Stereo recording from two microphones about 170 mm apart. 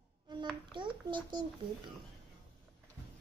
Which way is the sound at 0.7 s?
30° right (ahead or behind).